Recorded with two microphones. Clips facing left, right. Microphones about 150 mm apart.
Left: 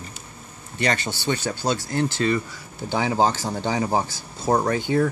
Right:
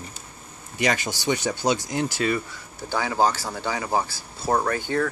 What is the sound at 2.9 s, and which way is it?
Speech, 20° left (ahead or behind).